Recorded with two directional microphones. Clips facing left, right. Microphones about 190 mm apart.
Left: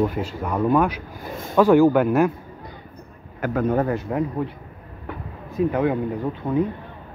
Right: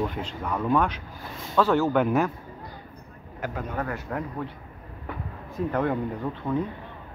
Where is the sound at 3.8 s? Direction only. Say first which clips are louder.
Left 8 dB; 25° left (ahead or behind).